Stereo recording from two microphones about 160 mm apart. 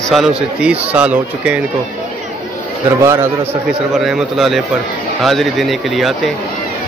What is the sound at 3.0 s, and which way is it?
Speech, 15° right (ahead or behind).